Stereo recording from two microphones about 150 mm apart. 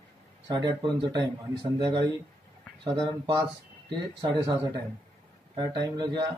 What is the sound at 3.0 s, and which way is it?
Speech, 30° right (ahead or behind).